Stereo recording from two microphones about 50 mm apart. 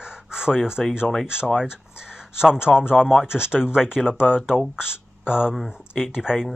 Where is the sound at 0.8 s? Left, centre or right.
Centre.